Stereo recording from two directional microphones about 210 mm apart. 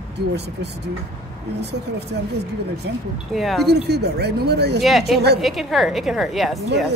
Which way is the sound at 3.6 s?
50° right (ahead or behind).